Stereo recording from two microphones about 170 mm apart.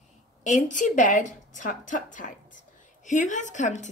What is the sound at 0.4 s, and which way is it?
A woman's voice, 45° left (ahead or behind).